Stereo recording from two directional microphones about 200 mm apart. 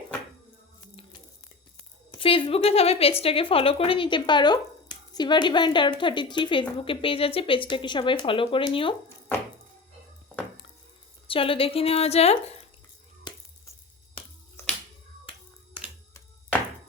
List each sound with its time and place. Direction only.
2.1 s a woman's voice: 25° left (ahead or behind)
11.3 s a woman's voice: 25° left (ahead or behind)